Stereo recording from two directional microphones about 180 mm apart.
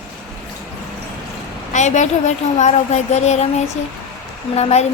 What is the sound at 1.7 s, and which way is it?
Speech, 40° left (ahead or behind).